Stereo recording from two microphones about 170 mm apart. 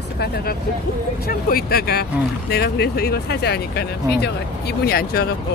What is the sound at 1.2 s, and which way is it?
Speech, 65° left (ahead or behind).